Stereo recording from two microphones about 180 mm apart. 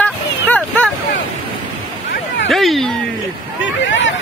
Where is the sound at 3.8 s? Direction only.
90° left.